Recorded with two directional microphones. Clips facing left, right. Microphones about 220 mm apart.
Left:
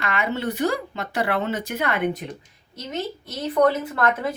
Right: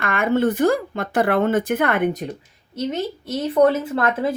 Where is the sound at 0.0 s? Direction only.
50° right (ahead or behind).